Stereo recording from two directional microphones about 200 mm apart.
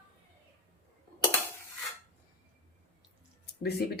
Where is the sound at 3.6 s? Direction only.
55° left (ahead or behind).